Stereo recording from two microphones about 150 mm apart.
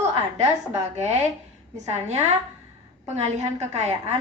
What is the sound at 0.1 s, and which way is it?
A woman's voice, 45° right (ahead or behind).